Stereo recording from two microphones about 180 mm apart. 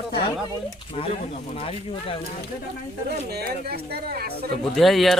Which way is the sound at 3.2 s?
60° right (ahead or behind).